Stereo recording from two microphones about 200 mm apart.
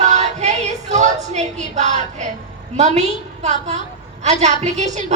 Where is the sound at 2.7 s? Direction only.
35° right (ahead or behind).